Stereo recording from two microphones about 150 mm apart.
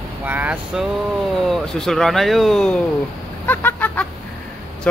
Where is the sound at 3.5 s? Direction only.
15° left (ahead or behind).